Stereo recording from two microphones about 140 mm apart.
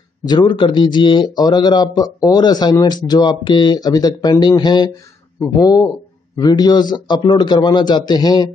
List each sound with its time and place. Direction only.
0.2 s speech: 30° left (ahead or behind)